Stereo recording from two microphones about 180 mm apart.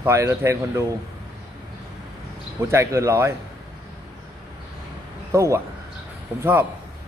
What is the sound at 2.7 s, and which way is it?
Speech, 15° right (ahead or behind).